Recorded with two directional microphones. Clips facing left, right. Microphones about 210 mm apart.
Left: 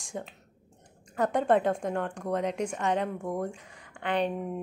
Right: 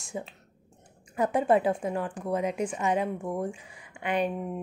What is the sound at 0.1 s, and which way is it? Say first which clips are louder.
A woman's voice: right 1 dB; 5° right (ahead or behind).